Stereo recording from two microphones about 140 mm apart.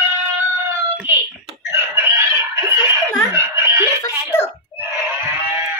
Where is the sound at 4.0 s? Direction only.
15° left (ahead or behind).